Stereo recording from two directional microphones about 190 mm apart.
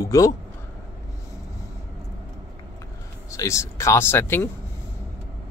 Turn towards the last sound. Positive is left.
turn(degrees=10)  # may be behind; listen again after turning